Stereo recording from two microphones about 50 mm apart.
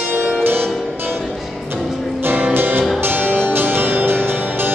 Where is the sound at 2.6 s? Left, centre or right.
Right.